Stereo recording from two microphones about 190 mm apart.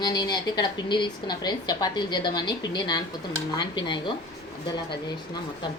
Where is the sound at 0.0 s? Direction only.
20° left (ahead or behind).